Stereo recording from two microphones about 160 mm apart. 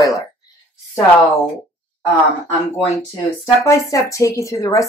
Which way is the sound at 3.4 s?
15° left (ahead or behind).